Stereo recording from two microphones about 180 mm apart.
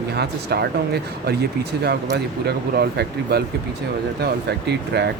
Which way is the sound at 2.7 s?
60° right (ahead or behind).